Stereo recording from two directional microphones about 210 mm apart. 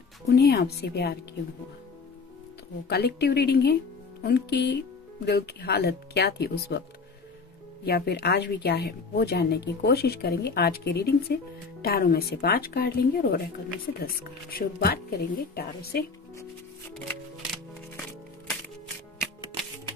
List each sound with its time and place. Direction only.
0.3 s a woman's voice: 50° left (ahead or behind)
2.9 s a woman's voice: 50° left (ahead or behind)
7.8 s a woman's voice: 50° left (ahead or behind)